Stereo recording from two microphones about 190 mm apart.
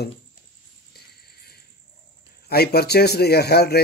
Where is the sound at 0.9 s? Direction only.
55° left (ahead or behind).